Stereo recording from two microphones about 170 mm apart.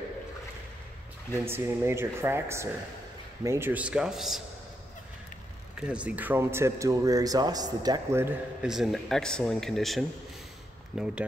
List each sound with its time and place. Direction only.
1.3 s a man's voice: 15° right (ahead or behind)
5.8 s a man's voice: 5° right (ahead or behind)
8.6 s speech: 5° right (ahead or behind)